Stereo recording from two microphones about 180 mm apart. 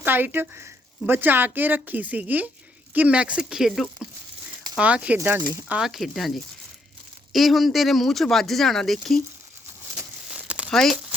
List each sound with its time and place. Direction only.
0.0 s speech: 10° right (ahead or behind)
10.2 s crumpling: 5° right (ahead or behind)
10.7 s speech: 5° left (ahead or behind)